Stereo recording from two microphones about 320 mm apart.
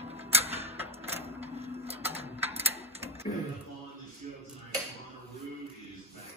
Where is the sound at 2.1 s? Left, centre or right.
Centre.